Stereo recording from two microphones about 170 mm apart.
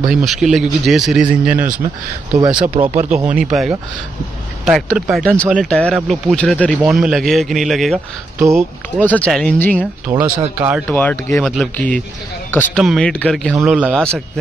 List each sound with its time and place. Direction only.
0.0 s speech: 5° right (ahead or behind)
2.3 s speech: 25° right (ahead or behind)
2.8 s speech: 40° right (ahead or behind)
4.6 s speech: 5° right (ahead or behind)
5.1 s speech: 5° left (ahead or behind)
8.4 s speech: 15° right (ahead or behind)
9.0 s speech: 10° left (ahead or behind)
10.2 s speech: 10° right (ahead or behind)
10.9 s speech: 10° left (ahead or behind)
13.6 s speech: 10° right (ahead or behind)